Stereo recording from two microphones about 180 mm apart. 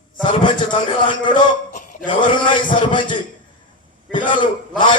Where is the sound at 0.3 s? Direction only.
25° left (ahead or behind).